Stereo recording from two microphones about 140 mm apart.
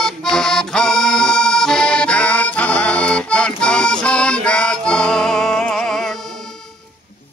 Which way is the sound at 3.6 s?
5° left (ahead or behind).